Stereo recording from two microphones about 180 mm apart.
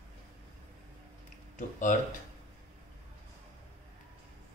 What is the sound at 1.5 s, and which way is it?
Speech, 45° left (ahead or behind).